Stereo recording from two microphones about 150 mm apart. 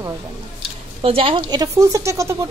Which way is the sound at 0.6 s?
40° right (ahead or behind).